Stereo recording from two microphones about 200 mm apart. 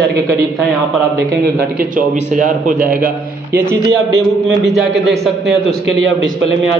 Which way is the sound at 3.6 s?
10° right (ahead or behind).